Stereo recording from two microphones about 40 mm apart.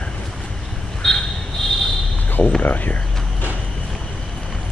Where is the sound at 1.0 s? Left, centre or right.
Centre.